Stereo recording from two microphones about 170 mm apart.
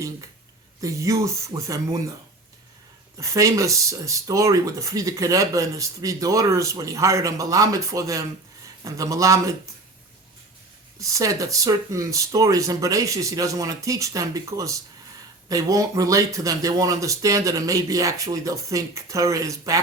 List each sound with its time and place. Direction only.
0.8 s speech: 20° right (ahead or behind)
3.2 s speech: 20° right (ahead or behind)
11.0 s speech: 20° right (ahead or behind)